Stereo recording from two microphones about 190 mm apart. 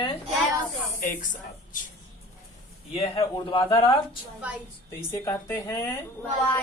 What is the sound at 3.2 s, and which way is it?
Speech, 25° left (ahead or behind).